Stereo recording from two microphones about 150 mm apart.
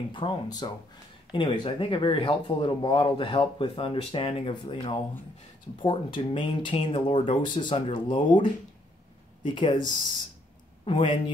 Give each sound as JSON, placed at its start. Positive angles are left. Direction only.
{"t": 0.1, "sound": "speech", "side_deg": 30}
{"t": 10.9, "sound": "speech", "side_deg": 35}